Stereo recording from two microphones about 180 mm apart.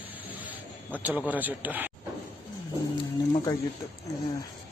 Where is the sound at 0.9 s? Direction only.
10° right (ahead or behind).